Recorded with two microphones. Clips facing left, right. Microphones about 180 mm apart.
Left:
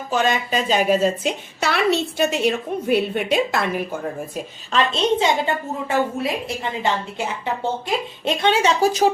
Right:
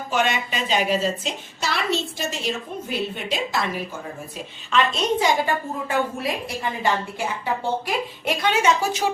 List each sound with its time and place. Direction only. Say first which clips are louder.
0.1 s a woman's voice: left 3 dB; 35° left (ahead or behind); by 4.0 s 55° left (ahead or behind)
4.7 s speech: left 2 dB; 30° left (ahead or behind)